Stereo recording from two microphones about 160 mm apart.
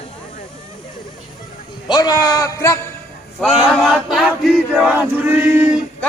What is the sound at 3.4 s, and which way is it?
Chant, centre (ahead or behind).